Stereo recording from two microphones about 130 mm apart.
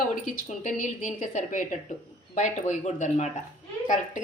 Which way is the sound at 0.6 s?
70° left (ahead or behind).